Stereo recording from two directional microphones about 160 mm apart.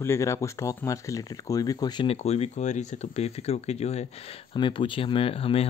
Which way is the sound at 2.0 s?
40° left (ahead or behind).